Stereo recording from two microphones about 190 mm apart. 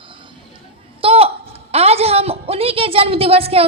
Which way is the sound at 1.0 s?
30° right (ahead or behind).